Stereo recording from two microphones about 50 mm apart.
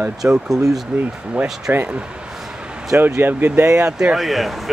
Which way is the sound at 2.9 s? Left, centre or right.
Right.